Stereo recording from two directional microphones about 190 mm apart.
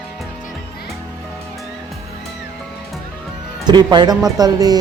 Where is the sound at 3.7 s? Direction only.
20° right (ahead or behind).